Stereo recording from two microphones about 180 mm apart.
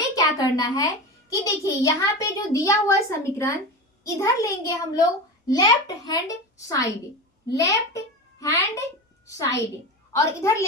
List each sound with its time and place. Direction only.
0.3 s a child's voice: 20° left (ahead or behind)